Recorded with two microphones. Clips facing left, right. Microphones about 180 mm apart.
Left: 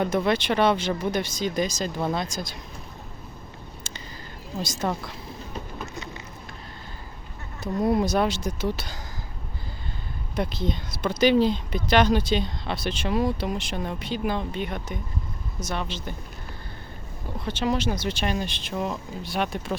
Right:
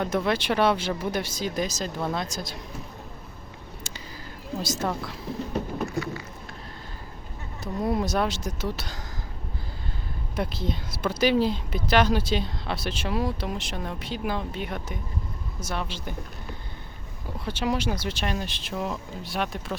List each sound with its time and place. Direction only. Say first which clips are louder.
0.0 s speech: left 2 dB; centre (ahead or behind)
3.9 s a sound: even; 10° right (ahead or behind)
4.6 s speech: left 1 dB; 5° right (ahead or behind)
5.9 s a sound: right 7 dB; 20° left (ahead or behind)
7.6 s speech: left 4 dB; centre (ahead or behind)
10.3 s speech: left 2 dB; 5° right (ahead or behind)
17.4 s speech: left 2 dB; 10° right (ahead or behind)